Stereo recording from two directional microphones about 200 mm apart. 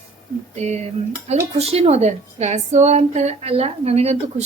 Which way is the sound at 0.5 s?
35° right (ahead or behind).